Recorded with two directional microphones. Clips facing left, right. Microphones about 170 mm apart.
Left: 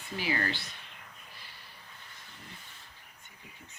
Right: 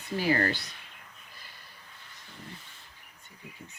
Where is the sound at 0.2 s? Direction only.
45° right (ahead or behind).